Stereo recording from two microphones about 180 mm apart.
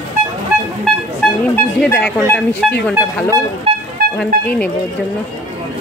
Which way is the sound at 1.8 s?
10° left (ahead or behind).